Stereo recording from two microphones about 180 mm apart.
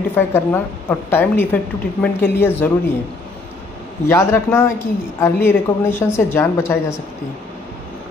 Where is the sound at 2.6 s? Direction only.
10° left (ahead or behind).